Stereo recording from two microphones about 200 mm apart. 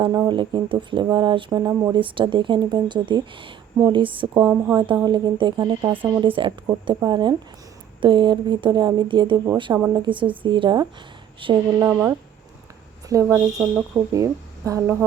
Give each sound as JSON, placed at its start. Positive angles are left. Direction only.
{"t": 0.0, "sound": "speech", "side_deg": -20}
{"t": 4.4, "sound": "a woman's voice", "side_deg": -10}
{"t": 5.0, "sound": "speech", "side_deg": -20}
{"t": 11.8, "sound": "a woman's voice", "side_deg": -15}
{"t": 13.2, "sound": "a woman's voice", "side_deg": -10}